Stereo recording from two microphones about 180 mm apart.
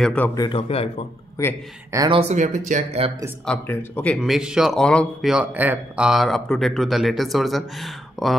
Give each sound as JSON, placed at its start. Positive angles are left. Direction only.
{"t": 0.0, "sound": "a man's voice", "side_deg": 5}
{"t": 0.3, "sound": "a man's voice", "side_deg": 25}
{"t": 2.0, "sound": "speech", "side_deg": -35}
{"t": 3.4, "sound": "a man's voice", "side_deg": 10}